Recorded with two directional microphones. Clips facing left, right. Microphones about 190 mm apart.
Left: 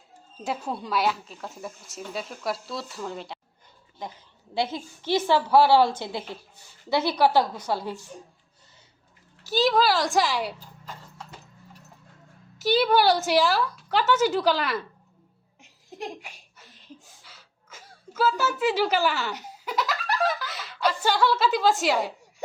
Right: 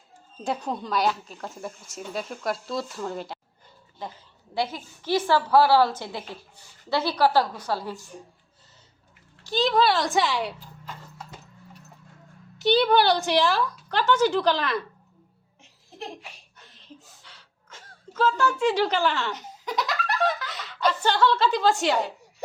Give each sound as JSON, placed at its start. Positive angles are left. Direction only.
{"t": 0.4, "sound": "speech", "side_deg": 5}
{"t": 4.5, "sound": "a woman's voice", "side_deg": 20}
{"t": 9.4, "sound": "speech", "side_deg": 5}
{"t": 12.5, "sound": "speech", "side_deg": 5}
{"t": 16.0, "sound": "a sound", "side_deg": 10}
{"t": 17.2, "sound": "gasp", "side_deg": 5}